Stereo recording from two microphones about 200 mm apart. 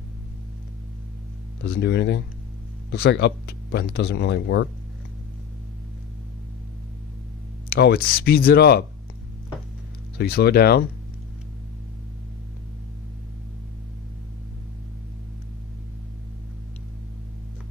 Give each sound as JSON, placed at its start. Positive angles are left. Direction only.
{"t": 1.6, "sound": "speech", "side_deg": 60}
{"t": 7.7, "sound": "speech", "side_deg": 50}
{"t": 10.1, "sound": "speech", "side_deg": 50}